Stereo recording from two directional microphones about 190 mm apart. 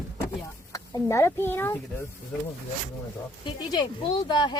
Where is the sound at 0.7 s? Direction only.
15° left (ahead or behind).